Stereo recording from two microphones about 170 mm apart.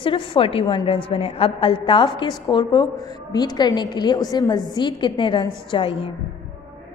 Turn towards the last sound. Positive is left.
turn(degrees=30)  # may be behind; listen again after turning